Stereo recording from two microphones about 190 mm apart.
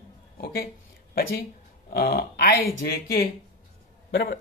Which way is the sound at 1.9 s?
55° left (ahead or behind).